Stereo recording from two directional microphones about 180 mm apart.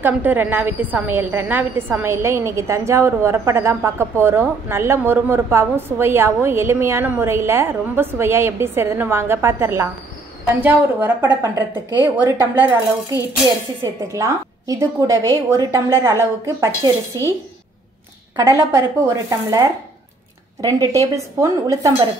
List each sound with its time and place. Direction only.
0.0 s a woman's voice: 10° right (ahead or behind)
18.3 s a woman's voice: 15° right (ahead or behind)